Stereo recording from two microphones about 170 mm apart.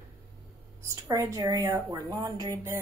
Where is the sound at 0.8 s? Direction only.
20° right (ahead or behind).